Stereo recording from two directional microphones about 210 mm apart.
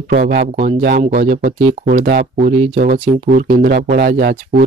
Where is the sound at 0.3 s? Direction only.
40° right (ahead or behind).